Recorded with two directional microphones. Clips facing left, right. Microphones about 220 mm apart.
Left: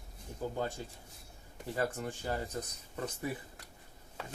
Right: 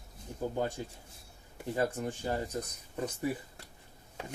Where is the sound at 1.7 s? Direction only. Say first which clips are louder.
Right 3 dB; 20° right (ahead or behind).